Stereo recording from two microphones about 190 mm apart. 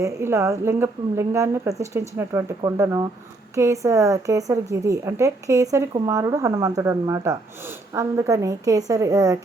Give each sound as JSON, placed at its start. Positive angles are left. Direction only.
{"t": 0.0, "sound": "a woman's voice", "side_deg": -15}